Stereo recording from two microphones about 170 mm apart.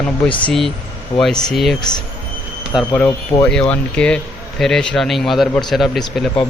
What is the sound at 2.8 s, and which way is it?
Speech, 10° left (ahead or behind).